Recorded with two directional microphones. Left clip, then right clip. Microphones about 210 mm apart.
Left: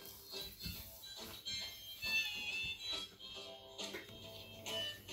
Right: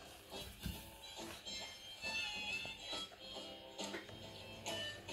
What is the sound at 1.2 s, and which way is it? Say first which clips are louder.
Music: left 3 dB; 45° right (ahead or behind).